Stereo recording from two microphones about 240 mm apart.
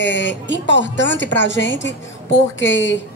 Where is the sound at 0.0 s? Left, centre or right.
Left.